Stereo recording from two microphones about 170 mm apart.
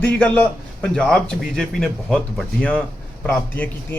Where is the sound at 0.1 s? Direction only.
10° left (ahead or behind).